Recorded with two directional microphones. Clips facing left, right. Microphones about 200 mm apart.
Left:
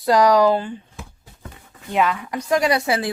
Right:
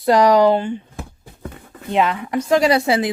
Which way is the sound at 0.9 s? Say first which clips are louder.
Right 6 dB; 55° right (ahead or behind).